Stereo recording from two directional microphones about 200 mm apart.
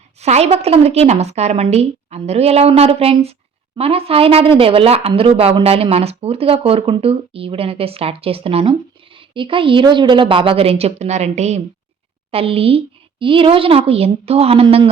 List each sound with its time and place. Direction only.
0.2 s a woman's voice: 30° right (ahead or behind)